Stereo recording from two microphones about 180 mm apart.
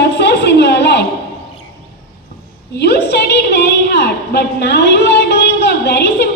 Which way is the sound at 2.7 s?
70° left (ahead or behind).